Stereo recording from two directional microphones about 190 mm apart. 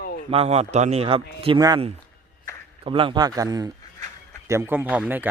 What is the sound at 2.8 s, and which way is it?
Speech, 25° right (ahead or behind).